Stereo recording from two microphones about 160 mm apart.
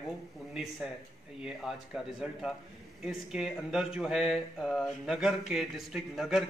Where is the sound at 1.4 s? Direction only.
Centre (ahead or behind).